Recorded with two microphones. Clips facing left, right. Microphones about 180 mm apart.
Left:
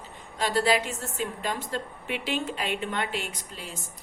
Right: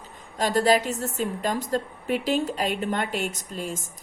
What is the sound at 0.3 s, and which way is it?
A woman's voice, 40° right (ahead or behind).